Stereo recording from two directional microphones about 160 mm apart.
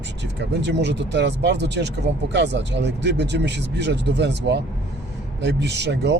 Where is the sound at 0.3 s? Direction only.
90° right.